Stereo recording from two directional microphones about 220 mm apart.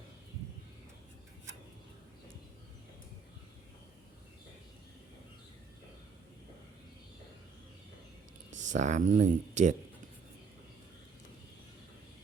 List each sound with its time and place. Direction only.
8.4 s speech: 35° right (ahead or behind)